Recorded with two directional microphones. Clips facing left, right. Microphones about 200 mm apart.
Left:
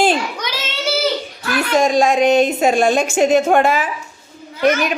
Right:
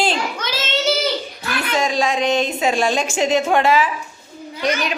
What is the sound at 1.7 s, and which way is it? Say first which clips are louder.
A woman's voice: left 6 dB; 50° left (ahead or behind).